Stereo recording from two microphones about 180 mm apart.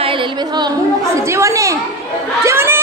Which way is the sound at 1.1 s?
15° right (ahead or behind).